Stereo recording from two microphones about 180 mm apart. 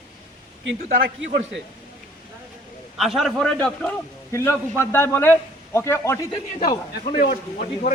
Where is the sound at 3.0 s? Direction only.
Centre (ahead or behind); by 6.2 s 15° left (ahead or behind).